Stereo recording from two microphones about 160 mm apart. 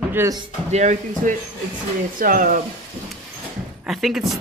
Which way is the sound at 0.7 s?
50° right (ahead or behind).